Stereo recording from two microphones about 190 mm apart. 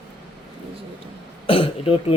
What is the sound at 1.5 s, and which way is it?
Throat clearing, 30° left (ahead or behind).